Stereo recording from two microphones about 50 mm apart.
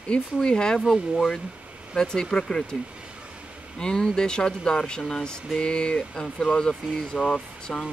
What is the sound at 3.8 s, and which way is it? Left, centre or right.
Speech, centre.